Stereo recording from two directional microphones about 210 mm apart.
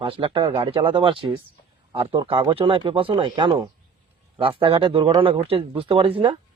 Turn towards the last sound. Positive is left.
turn(degrees=-25)  # may be behind; listen again after turning